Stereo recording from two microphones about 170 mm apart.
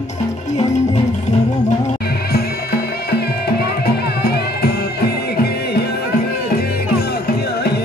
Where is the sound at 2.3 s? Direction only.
65° left (ahead or behind).